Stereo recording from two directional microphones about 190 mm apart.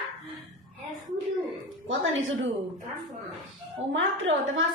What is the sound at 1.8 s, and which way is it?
Speech, 80° right.